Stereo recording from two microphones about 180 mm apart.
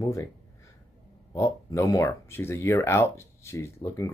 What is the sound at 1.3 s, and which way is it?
Speech, 15° left (ahead or behind).